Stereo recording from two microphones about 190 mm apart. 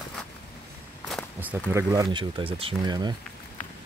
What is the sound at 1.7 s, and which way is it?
Speech, 20° right (ahead or behind).